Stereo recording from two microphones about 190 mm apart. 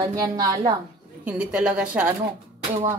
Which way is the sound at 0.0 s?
20° right (ahead or behind).